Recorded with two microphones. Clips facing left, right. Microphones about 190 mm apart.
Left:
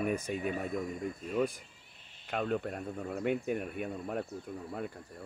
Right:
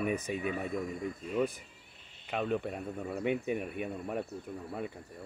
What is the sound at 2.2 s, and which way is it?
Speech, centre (ahead or behind).